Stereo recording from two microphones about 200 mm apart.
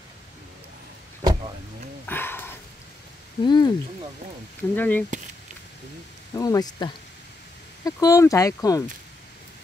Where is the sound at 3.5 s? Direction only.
20° left (ahead or behind).